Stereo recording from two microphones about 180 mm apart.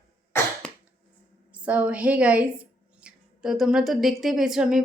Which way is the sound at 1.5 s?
10° right (ahead or behind).